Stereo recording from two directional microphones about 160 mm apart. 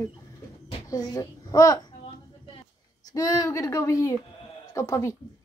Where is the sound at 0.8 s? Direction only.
25° left (ahead or behind).